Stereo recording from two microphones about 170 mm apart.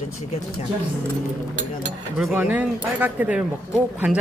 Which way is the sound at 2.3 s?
10° right (ahead or behind).